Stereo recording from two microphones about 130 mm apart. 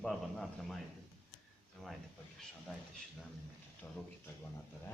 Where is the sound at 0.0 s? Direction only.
5° left (ahead or behind).